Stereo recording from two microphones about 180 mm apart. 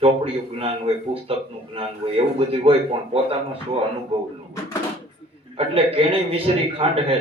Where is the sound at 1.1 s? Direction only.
30° right (ahead or behind).